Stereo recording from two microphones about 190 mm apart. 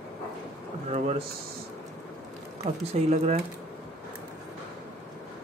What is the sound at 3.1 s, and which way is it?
Speech, 35° right (ahead or behind).